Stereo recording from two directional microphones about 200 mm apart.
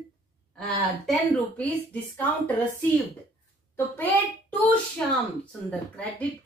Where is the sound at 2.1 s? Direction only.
10° left (ahead or behind).